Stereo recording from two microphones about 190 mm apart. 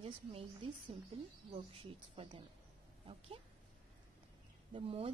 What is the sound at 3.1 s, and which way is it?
Speech, 30° right (ahead or behind).